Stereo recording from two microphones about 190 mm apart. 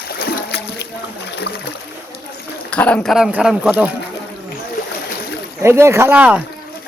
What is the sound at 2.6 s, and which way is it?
Speech, 5° left (ahead or behind).